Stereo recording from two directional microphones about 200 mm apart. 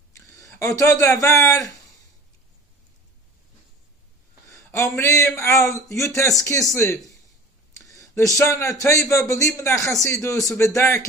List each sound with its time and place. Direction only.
0.1 s speech: 15° left (ahead or behind)
4.5 s a man's voice: 15° left (ahead or behind)
7.8 s a sound: 15° left (ahead or behind)
8.4 s a man's voice: 15° left (ahead or behind)